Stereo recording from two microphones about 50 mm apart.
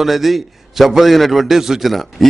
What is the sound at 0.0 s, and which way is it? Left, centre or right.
A man's voice, centre.